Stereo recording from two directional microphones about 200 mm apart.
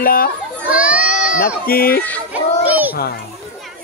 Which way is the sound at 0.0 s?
45° left (ahead or behind).